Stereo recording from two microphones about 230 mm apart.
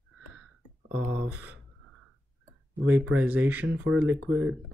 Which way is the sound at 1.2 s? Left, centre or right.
Centre.